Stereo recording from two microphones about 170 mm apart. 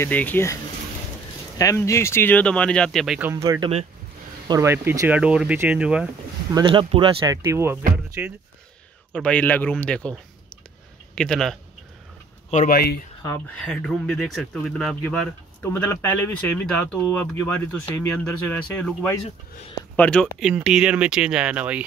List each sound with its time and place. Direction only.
0.0 s speech: 10° left (ahead or behind)
1.6 s speech: 20° left (ahead or behind); by 3.2 s centre (ahead or behind)
3.2 s speech: 15° right (ahead or behind)
6.5 s speech: 30° right (ahead or behind)
7.2 s speech: 15° right (ahead or behind)
9.1 s speech: 5° left (ahead or behind)
11.1 s speech: 5° left (ahead or behind)
12.6 s speech: 65° left (ahead or behind)
13.6 s speech: centre (ahead or behind)
15.6 s speech: 15° left (ahead or behind); by 21.8 s 10° right (ahead or behind)